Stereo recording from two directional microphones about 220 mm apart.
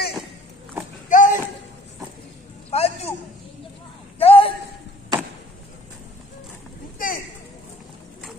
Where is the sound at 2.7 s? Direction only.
30° left (ahead or behind).